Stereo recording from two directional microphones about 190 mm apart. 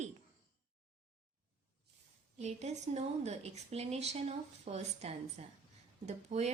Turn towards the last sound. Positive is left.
turn(degrees=-35)  # may be behind; listen again after turning